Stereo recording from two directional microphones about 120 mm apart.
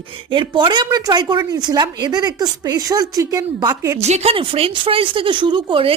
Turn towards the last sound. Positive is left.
turn(degrees=-50)  # may be behind; listen again after turning